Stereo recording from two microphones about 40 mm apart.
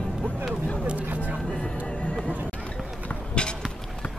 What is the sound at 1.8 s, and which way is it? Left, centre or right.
Music, left.